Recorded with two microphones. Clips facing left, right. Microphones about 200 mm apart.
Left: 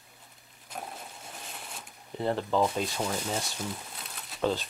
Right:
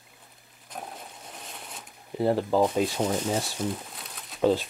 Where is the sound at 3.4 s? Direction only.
Centre (ahead or behind).